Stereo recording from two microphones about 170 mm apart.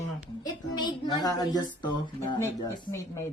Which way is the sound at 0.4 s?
25° left (ahead or behind).